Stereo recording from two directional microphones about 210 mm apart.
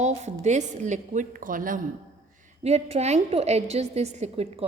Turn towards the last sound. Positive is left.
turn(degrees=-30)  # may be behind; listen again after turning